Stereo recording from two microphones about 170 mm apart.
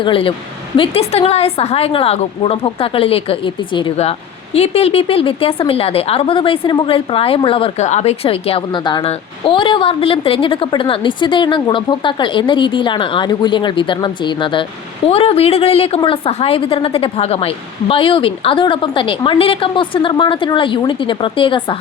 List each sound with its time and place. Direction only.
0.0 s a woman's voice: 30° left (ahead or behind)